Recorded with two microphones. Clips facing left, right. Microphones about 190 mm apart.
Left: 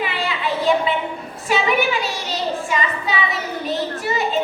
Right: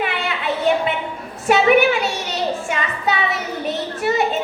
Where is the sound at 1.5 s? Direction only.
60° right (ahead or behind).